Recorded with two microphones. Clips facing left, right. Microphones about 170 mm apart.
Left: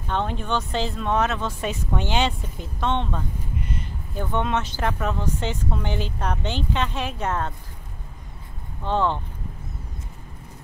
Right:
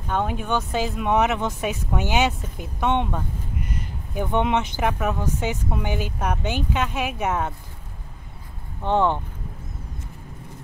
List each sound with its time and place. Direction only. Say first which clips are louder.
0.1 s speech: right 1 dB; 10° right (ahead or behind)
8.8 s speech: right 3 dB; 15° right (ahead or behind)